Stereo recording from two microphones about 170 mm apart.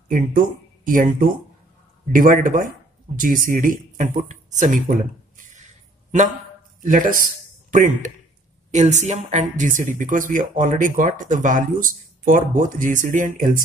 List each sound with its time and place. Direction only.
0.1 s speech: 50° right (ahead or behind)
2.1 s speech: 50° right (ahead or behind)
5.4 s a sound: 45° right (ahead or behind)
6.8 s speech: 50° right (ahead or behind)